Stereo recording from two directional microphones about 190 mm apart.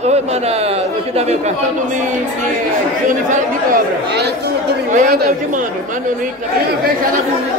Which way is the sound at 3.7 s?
60° right (ahead or behind).